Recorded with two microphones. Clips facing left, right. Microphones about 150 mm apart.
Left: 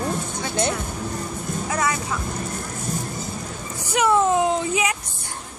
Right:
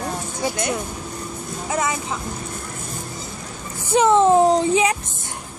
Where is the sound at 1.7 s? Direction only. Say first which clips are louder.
Right 1 dB; 25° right (ahead or behind).